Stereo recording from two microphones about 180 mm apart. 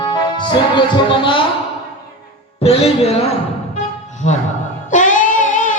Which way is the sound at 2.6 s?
35° left (ahead or behind).